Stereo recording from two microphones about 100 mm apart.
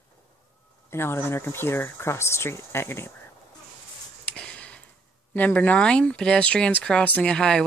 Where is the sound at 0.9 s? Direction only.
25° left (ahead or behind).